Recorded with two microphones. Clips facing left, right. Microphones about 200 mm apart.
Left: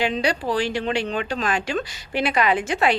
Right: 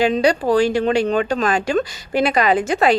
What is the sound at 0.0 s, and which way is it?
Speech, 45° right (ahead or behind).